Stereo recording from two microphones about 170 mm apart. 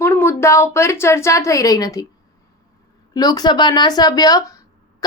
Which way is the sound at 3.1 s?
25° left (ahead or behind).